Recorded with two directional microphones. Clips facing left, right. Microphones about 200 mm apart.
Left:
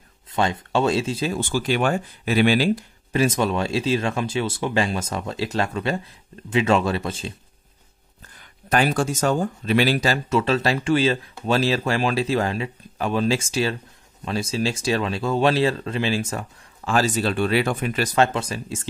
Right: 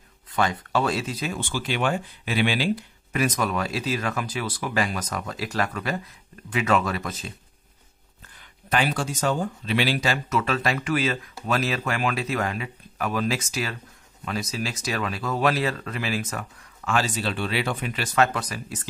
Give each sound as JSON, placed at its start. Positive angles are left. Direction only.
{"t": 0.3, "sound": "speech", "side_deg": 25}
{"t": 1.4, "sound": "speech", "side_deg": 45}
{"t": 3.1, "sound": "speech", "side_deg": 30}
{"t": 8.6, "sound": "speech", "side_deg": 45}
{"t": 18.1, "sound": "speech", "side_deg": 25}